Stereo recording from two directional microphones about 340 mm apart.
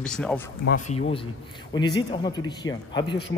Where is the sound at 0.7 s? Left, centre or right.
Left.